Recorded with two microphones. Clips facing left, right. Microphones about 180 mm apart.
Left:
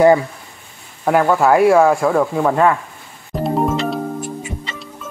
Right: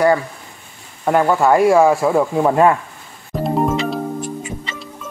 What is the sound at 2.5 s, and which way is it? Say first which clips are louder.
Speech: right 2 dB; 20° right (ahead or behind).